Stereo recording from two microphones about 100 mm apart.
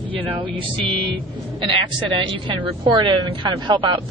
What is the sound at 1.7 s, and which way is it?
Speech, 55° right (ahead or behind).